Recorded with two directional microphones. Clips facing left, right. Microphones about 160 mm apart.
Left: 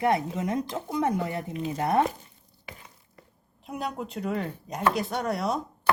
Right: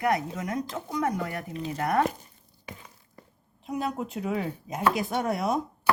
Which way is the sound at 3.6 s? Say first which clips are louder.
Right 3 dB; centre (ahead or behind).